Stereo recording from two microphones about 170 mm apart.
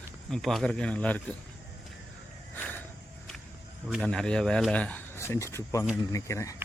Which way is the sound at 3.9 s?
5° left (ahead or behind).